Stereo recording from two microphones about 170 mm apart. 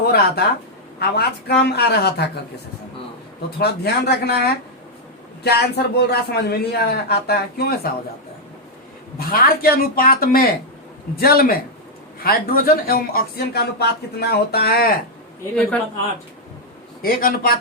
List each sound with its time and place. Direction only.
0.0 s a man's voice: 65° left (ahead or behind)
3.6 s a man's voice: 70° left (ahead or behind)
9.1 s speech: 60° left (ahead or behind)
17.0 s speech: 55° left (ahead or behind)